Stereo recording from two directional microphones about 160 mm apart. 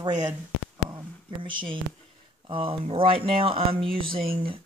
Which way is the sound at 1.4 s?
30° right (ahead or behind).